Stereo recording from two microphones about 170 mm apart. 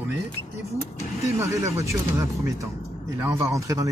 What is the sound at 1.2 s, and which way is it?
Speech, 15° right (ahead or behind).